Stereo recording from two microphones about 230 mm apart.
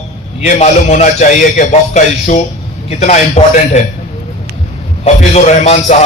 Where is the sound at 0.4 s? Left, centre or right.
Left.